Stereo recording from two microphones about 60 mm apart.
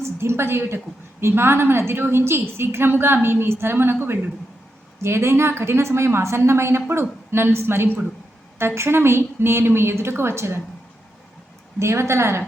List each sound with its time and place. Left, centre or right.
0.0 s a woman's voice: right
5.0 s a woman's voice: right
11.8 s a woman's voice: right